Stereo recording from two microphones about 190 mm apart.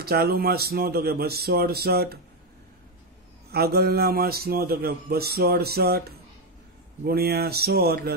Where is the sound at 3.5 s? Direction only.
55° right (ahead or behind).